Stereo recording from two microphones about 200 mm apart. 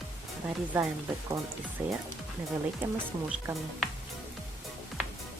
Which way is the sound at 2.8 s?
10° right (ahead or behind).